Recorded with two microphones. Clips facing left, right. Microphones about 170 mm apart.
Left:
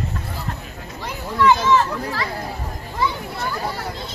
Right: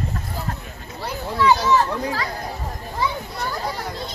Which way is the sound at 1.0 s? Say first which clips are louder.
Left 2 dB; 35° right (ahead or behind).